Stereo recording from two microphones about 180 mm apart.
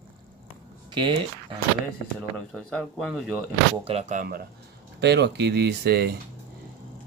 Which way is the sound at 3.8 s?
40° right (ahead or behind).